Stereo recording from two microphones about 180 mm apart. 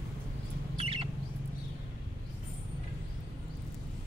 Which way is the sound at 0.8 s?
30° right (ahead or behind).